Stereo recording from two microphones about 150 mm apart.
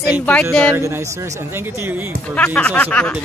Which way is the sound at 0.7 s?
20° right (ahead or behind).